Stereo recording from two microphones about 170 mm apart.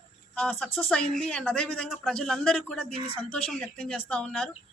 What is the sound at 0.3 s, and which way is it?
Speech, 5° left (ahead or behind).